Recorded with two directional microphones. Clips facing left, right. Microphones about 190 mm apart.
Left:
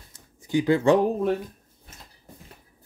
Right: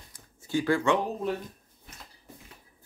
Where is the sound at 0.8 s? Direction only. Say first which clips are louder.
Left 7 dB; 40° left (ahead or behind).